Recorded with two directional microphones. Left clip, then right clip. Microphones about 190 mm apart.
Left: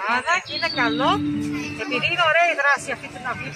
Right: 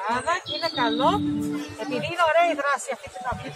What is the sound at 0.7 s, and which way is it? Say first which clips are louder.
Speech: left 2 dB; 50° right (ahead or behind).